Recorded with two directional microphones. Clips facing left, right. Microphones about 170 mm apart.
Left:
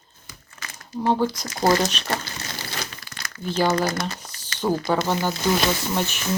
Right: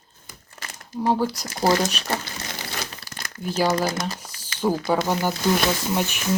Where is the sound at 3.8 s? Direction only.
25° right (ahead or behind).